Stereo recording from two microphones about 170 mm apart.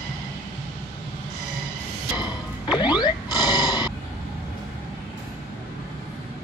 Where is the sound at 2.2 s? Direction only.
25° left (ahead or behind).